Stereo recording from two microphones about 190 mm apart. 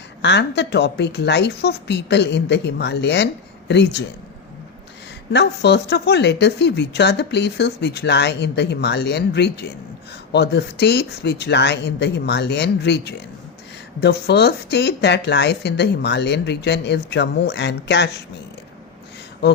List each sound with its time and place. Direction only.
0.2 s speech: 65° left (ahead or behind)
5.3 s speech: 60° left (ahead or behind)